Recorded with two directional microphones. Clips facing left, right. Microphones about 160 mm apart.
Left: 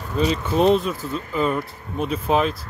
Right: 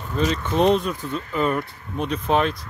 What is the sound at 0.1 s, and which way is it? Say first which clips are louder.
Speech: left 2 dB; 10° left (ahead or behind).